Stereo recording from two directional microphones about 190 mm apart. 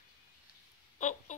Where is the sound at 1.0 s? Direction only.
40° left (ahead or behind).